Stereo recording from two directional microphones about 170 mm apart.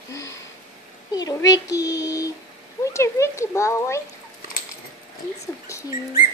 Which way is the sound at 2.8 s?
15° left (ahead or behind).